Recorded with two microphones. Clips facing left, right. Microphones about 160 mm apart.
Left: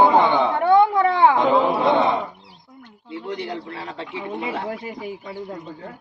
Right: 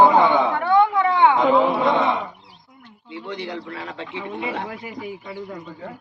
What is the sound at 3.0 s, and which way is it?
A man's voice, 35° left (ahead or behind).